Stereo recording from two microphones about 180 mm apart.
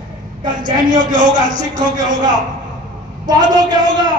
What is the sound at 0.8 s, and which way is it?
Speech, 45° right (ahead or behind).